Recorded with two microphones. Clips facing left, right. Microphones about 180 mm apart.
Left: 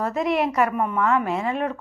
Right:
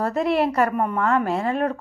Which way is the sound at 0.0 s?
35° right (ahead or behind).